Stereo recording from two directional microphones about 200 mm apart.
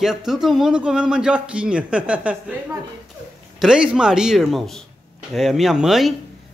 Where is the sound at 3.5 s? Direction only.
5° right (ahead or behind).